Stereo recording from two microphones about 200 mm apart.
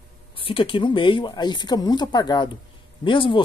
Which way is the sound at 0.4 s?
25° left (ahead or behind).